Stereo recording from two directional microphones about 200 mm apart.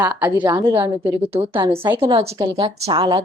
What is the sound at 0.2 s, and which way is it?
Speech, 10° right (ahead or behind).